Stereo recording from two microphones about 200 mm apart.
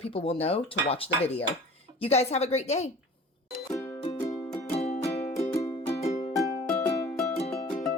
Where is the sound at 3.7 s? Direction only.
15° left (ahead or behind).